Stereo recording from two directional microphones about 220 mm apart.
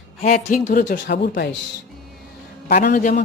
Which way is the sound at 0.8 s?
50° left (ahead or behind).